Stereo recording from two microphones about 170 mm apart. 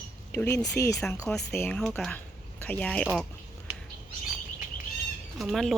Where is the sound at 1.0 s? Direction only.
5° left (ahead or behind).